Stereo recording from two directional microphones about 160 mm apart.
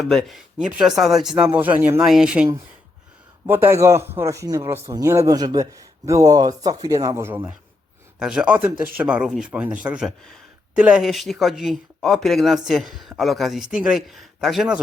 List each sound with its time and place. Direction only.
0.0 s a man's voice: centre (ahead or behind)